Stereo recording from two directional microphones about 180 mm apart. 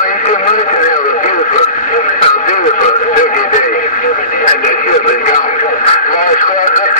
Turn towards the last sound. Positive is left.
turn(degrees=45)  # may be behind; listen again after turning